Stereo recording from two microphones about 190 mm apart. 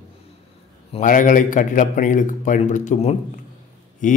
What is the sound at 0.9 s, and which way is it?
A man's voice, 45° left (ahead or behind).